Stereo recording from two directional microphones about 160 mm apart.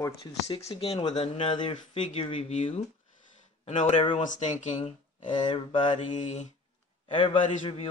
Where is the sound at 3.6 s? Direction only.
45° left (ahead or behind).